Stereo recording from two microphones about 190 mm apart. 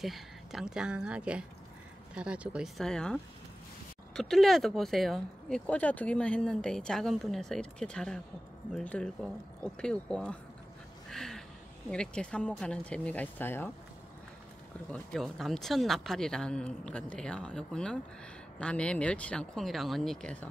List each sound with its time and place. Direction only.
0.0 s speech: centre (ahead or behind)
11.1 s a sound: centre (ahead or behind)
11.9 s speech: 5° left (ahead or behind)
14.9 s speech: centre (ahead or behind)